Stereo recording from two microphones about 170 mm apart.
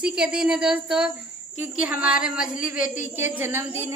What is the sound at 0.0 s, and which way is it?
Speech, 5° right (ahead or behind).